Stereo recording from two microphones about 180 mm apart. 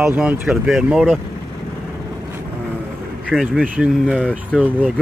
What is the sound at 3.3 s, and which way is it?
Speech, centre (ahead or behind).